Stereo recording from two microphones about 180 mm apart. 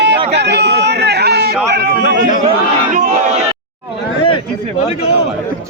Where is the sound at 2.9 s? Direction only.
45° right (ahead or behind).